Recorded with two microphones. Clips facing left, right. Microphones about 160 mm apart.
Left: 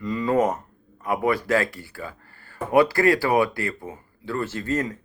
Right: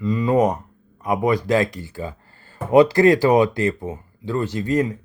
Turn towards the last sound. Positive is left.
turn(degrees=-15)  # may be behind; listen again after turning